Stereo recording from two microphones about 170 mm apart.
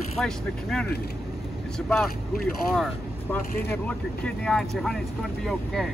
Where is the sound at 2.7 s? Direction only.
Centre (ahead or behind).